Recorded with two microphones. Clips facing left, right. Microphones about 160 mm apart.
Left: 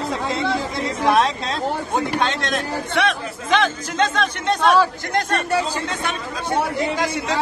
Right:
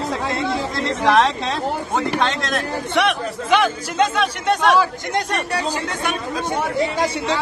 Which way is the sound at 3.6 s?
10° right (ahead or behind).